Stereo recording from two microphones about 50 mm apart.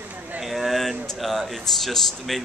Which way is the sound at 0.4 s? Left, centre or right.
Centre.